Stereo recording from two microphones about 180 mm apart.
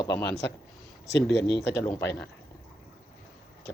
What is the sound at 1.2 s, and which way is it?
Speech, 75° left (ahead or behind).